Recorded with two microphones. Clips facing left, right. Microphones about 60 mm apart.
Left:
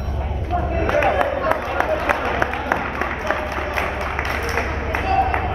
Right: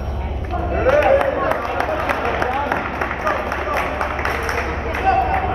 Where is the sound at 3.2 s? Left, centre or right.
Right.